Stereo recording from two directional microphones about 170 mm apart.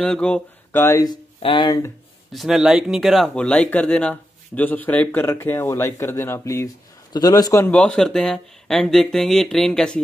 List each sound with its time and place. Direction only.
0.0 s speech: 5° left (ahead or behind)
1.4 s speech: 30° left (ahead or behind)
2.3 s speech: centre (ahead or behind)